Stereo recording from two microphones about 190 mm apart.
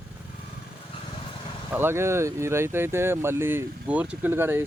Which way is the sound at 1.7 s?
10° right (ahead or behind).